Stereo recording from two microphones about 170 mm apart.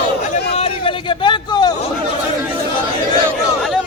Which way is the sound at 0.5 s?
35° left (ahead or behind).